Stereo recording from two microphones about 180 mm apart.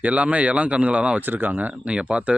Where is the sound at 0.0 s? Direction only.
5° right (ahead or behind).